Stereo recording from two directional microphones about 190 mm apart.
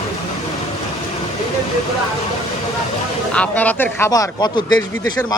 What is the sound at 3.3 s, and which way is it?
Speech, 5° left (ahead or behind).